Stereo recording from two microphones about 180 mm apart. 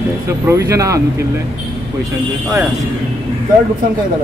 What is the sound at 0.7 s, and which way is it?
Speech, 15° right (ahead or behind).